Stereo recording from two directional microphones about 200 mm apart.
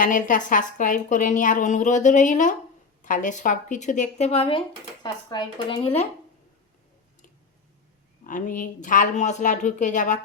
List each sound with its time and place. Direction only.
0.0 s a woman's voice: 40° left (ahead or behind)
8.3 s a woman's voice: 40° left (ahead or behind)